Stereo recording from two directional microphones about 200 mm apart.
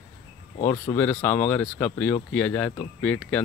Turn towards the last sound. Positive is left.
turn(degrees=5)  # may be behind; listen again after turning